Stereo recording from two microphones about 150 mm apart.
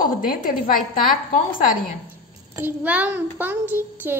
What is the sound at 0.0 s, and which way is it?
A woman's voice, 70° left (ahead or behind).